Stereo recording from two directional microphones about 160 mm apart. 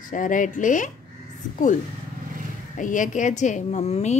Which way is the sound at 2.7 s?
55° left (ahead or behind).